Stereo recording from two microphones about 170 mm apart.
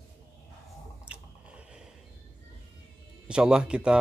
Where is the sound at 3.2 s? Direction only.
5° right (ahead or behind).